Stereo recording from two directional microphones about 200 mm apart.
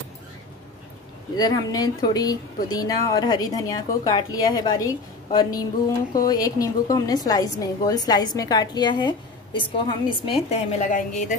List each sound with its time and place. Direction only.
1.3 s speech: 20° left (ahead or behind)
10.7 s a woman's voice: 40° left (ahead or behind)